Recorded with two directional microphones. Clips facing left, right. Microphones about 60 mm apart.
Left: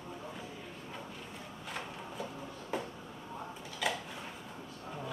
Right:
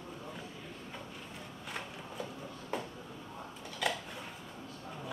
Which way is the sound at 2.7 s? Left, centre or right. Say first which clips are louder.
Left 1 dB; centre.